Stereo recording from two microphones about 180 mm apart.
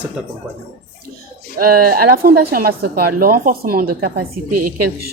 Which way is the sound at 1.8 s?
55° right (ahead or behind).